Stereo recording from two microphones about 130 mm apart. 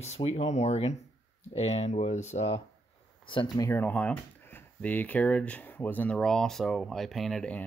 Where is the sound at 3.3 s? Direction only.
40° left (ahead or behind).